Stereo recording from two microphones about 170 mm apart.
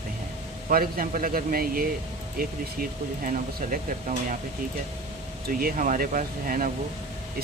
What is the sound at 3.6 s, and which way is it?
Speech, 50° right (ahead or behind).